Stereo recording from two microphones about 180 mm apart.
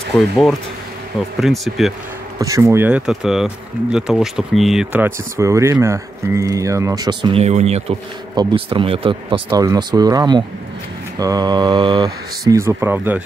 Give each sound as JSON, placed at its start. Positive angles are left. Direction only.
{"t": 0.1, "sound": "speech", "side_deg": 5}
{"t": 1.4, "sound": "speech", "side_deg": 0}
{"t": 2.3, "sound": "speech", "side_deg": -20}